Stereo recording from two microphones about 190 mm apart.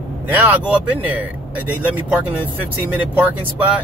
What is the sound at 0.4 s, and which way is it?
Speech, 10° right (ahead or behind).